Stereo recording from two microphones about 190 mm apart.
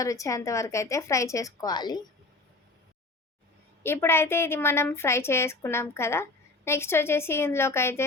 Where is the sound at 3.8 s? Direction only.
10° left (ahead or behind).